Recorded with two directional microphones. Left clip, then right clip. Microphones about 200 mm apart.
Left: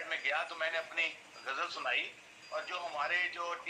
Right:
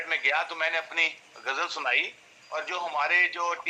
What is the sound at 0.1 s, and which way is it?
A man's voice, 45° right (ahead or behind).